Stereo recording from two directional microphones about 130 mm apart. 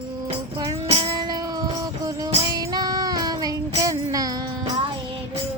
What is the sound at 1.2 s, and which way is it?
Music, 30° right (ahead or behind).